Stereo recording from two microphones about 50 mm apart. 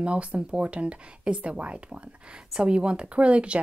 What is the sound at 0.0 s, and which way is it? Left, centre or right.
Speech, right.